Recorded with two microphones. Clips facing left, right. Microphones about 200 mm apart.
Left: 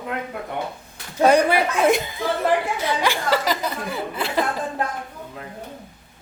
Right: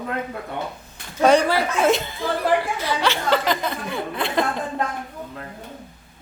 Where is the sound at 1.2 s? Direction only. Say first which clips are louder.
Even; 15° left (ahead or behind).